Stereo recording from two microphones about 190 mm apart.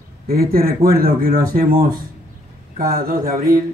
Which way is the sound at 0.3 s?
50° right (ahead or behind).